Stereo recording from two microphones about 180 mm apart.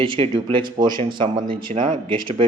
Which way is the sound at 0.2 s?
30° right (ahead or behind).